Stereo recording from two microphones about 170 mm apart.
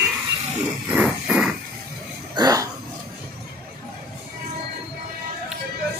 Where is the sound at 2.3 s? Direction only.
20° right (ahead or behind).